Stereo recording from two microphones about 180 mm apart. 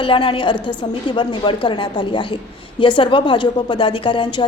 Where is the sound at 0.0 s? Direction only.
30° left (ahead or behind).